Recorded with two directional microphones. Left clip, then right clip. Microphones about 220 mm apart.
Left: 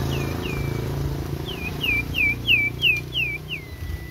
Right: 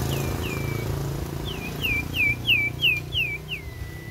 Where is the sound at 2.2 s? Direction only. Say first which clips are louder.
Left 1 dB; centre (ahead or behind).